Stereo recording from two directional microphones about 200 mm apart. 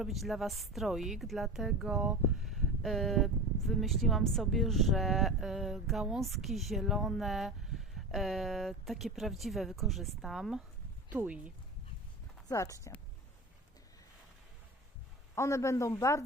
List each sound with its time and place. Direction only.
0.0 s speech: centre (ahead or behind)
12.5 s speech: 15° left (ahead or behind)
15.4 s speech: 15° left (ahead or behind)